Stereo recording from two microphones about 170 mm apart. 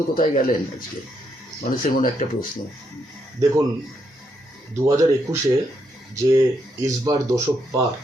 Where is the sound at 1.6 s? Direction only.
50° left (ahead or behind).